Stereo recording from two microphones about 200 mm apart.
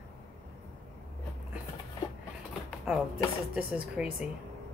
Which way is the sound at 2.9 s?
5° right (ahead or behind).